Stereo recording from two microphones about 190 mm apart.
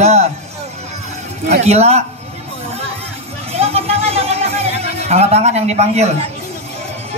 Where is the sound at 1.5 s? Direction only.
35° right (ahead or behind).